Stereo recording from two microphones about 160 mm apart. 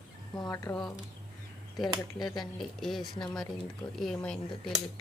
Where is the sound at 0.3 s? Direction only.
20° left (ahead or behind).